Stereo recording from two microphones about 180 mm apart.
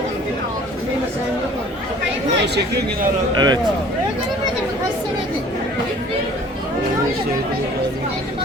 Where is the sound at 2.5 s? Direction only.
60° right (ahead or behind).